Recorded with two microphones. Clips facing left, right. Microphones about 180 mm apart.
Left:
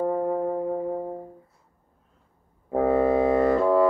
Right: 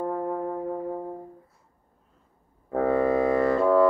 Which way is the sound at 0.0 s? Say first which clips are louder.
Left 4 dB; 15° left (ahead or behind).